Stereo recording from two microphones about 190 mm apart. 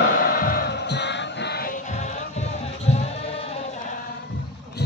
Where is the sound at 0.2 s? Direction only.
50° left (ahead or behind).